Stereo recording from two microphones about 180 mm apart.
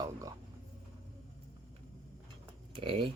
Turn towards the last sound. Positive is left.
turn(degrees=-30)  # may be behind; listen again after turning